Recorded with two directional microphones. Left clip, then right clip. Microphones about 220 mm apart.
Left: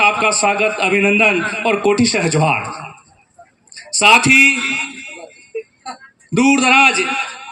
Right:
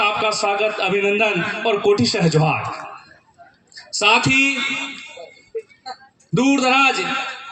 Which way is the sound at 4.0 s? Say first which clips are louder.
Left 6 dB; 25° left (ahead or behind).